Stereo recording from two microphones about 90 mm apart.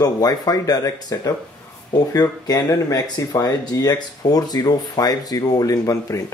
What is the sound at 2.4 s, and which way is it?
Speech, 40° left (ahead or behind).